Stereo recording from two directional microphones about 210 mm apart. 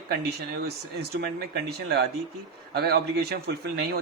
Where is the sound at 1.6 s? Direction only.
50° right (ahead or behind).